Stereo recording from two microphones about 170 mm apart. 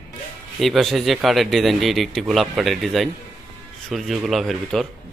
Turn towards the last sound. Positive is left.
turn(degrees=0)  # may be behind; listen again after turning